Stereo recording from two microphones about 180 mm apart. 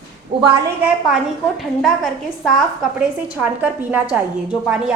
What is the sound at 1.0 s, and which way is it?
Speech, centre (ahead or behind).